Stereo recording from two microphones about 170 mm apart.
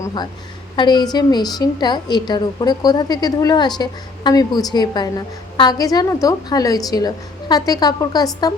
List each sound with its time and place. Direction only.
0.0 s a woman's voice: 25° left (ahead or behind)